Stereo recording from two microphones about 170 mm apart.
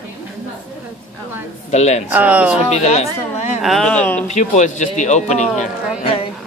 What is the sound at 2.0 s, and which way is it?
Speech, 10° right (ahead or behind).